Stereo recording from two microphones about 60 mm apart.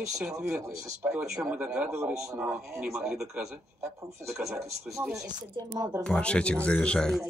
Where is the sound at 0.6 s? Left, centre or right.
Right.